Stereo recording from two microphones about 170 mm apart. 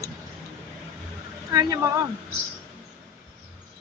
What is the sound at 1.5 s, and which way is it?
Speech, 20° right (ahead or behind).